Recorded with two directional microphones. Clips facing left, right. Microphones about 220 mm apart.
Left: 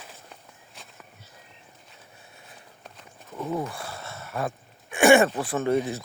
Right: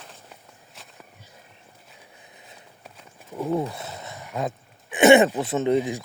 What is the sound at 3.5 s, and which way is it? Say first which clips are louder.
Speech: right 4 dB; 20° right (ahead or behind).